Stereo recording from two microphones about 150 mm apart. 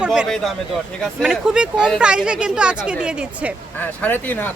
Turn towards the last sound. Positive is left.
turn(degrees=10)  # may be behind; listen again after turning